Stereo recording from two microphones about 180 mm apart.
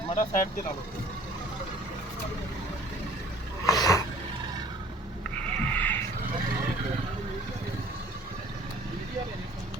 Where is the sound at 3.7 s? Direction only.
20° left (ahead or behind).